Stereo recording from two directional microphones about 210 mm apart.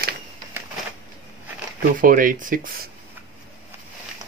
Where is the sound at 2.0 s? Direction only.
40° right (ahead or behind).